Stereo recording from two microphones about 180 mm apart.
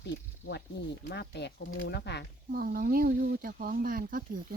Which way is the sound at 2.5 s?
55° right (ahead or behind).